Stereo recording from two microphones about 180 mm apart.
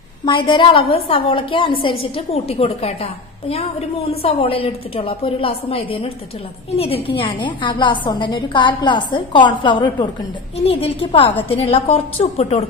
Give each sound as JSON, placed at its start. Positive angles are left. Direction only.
{"t": 0.2, "sound": "a woman's voice", "side_deg": 25}